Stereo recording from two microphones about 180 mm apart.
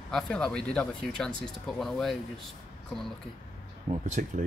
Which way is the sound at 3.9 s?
45° right (ahead or behind).